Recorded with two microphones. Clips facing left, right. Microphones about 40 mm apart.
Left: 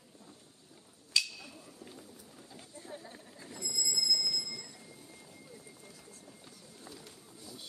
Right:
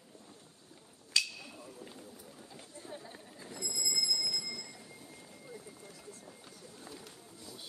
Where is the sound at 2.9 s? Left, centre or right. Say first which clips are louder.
Even; right.